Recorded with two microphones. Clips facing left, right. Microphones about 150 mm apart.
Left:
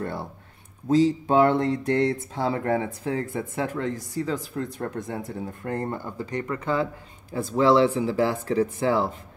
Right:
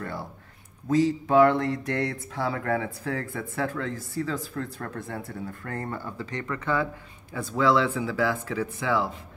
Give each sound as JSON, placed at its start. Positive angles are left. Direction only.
{"t": 0.0, "sound": "speech", "side_deg": 25}